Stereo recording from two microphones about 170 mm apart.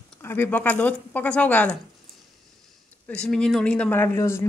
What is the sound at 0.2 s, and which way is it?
A woman's voice, 15° left (ahead or behind).